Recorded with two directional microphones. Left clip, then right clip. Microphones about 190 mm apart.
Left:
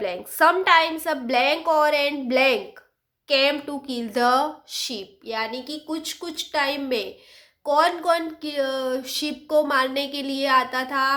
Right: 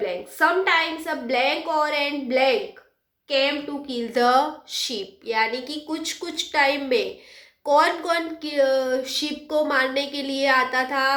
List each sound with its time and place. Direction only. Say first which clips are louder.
0.0 s a woman's voice: left 2 dB; 35° left (ahead or behind)